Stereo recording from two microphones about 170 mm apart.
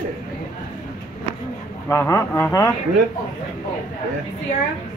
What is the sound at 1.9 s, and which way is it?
Speech, 15° left (ahead or behind).